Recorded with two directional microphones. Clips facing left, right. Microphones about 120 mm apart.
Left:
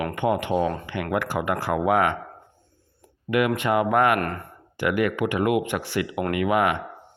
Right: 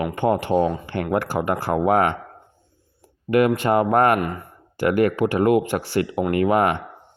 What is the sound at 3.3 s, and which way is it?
Speech, 35° right (ahead or behind).